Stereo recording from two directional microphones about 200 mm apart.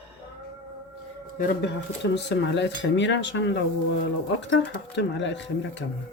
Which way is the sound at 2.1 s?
60° left (ahead or behind).